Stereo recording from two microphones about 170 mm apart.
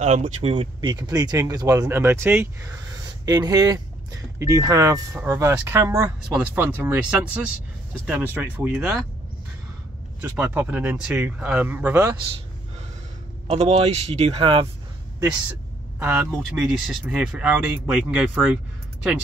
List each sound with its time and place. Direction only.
0.0 s speech: 40° right (ahead or behind); by 8.8 s 15° right (ahead or behind)
10.2 s speech: 10° right (ahead or behind)
13.5 s speech: 40° right (ahead or behind)
16.0 s speech: 10° right (ahead or behind)